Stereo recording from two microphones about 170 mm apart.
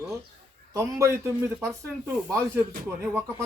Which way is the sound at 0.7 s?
15° right (ahead or behind).